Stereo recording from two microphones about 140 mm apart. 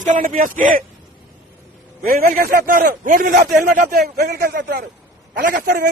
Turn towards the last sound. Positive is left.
turn(degrees=-85)